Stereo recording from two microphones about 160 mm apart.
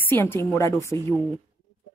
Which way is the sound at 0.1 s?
15° left (ahead or behind).